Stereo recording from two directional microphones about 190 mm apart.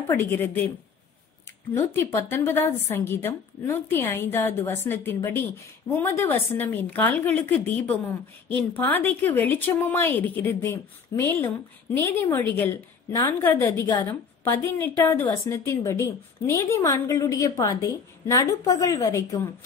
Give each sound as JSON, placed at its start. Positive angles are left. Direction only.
{"t": 0.1, "sound": "a woman's voice", "side_deg": 10}
{"t": 1.7, "sound": "a woman's voice", "side_deg": 15}
{"t": 8.7, "sound": "a woman's voice", "side_deg": 10}